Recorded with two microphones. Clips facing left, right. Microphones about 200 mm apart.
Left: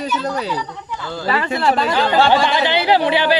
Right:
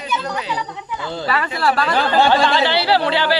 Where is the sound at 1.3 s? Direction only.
25° left (ahead or behind).